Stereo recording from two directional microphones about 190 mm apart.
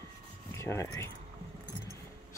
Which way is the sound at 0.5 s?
15° left (ahead or behind).